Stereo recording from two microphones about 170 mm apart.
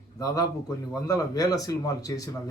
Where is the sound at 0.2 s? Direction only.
20° left (ahead or behind).